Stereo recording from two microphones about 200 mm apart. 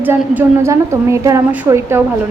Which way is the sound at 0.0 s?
10° right (ahead or behind).